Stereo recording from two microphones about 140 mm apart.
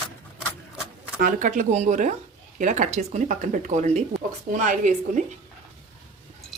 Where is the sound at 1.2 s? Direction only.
70° right (ahead or behind).